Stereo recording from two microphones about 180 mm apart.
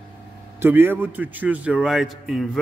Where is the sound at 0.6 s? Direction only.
10° right (ahead or behind).